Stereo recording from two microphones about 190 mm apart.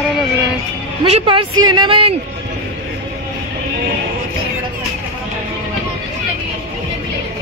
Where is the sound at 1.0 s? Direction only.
30° right (ahead or behind).